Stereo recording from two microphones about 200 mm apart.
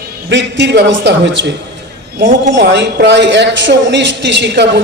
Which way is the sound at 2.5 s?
60° right (ahead or behind).